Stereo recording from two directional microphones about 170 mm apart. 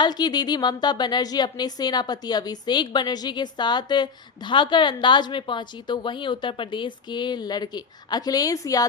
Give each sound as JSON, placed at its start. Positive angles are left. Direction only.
{"t": 0.0, "sound": "a woman's voice", "side_deg": 25}